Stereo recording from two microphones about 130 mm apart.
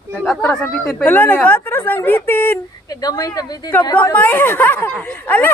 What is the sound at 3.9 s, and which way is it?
Speech, 15° left (ahead or behind).